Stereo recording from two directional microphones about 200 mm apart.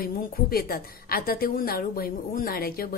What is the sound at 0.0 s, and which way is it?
A woman's voice, 45° left (ahead or behind).